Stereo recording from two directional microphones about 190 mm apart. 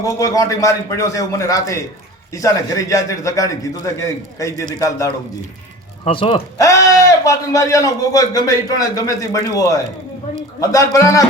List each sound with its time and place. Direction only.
0.0 s speech: 15° left (ahead or behind)
6.1 s speech: 25° left (ahead or behind)